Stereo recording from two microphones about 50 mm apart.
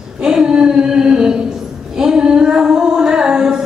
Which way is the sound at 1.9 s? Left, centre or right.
Centre.